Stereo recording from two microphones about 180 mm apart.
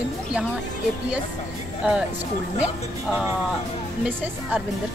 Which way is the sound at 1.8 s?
5° right (ahead or behind).